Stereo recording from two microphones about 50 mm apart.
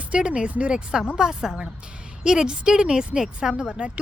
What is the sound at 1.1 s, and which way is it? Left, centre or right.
A woman's voice, centre.